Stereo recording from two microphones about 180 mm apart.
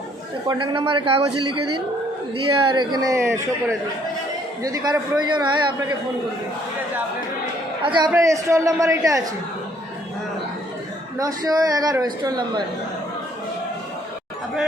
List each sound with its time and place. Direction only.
0.4 s a man's voice: 25° right (ahead or behind)
2.5 s a man's voice: 25° right (ahead or behind)
7.8 s a man's voice: 25° right (ahead or behind)
11.2 s a man's voice: 20° right (ahead or behind)